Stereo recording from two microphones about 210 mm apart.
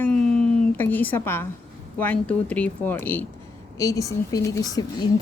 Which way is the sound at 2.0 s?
5° left (ahead or behind).